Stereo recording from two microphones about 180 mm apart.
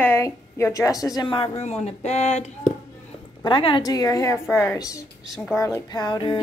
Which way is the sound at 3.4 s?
25° left (ahead or behind).